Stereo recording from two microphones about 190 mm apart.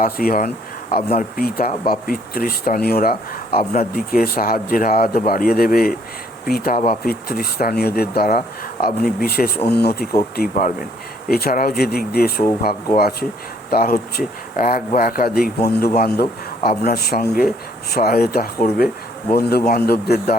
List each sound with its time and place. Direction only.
0.0 s speech: 50° left (ahead or behind)